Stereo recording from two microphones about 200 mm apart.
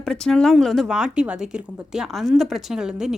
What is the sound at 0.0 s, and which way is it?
Speech, centre (ahead or behind).